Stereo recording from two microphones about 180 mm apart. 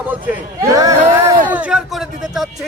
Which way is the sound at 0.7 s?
20° right (ahead or behind).